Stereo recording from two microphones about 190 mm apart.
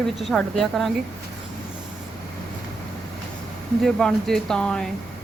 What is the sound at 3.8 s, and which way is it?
Speech, centre (ahead or behind).